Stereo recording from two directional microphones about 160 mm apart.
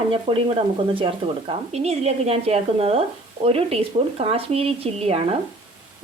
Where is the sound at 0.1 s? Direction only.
35° right (ahead or behind).